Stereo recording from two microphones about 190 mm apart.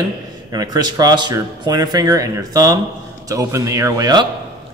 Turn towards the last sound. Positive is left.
turn(degrees=-20)  # may be behind; listen again after turning